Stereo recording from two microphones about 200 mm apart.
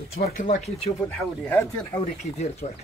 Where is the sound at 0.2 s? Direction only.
40° left (ahead or behind).